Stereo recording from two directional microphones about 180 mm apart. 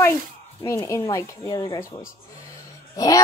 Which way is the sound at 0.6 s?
15° left (ahead or behind).